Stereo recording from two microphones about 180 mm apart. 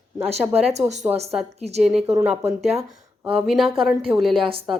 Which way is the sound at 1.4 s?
5° right (ahead or behind).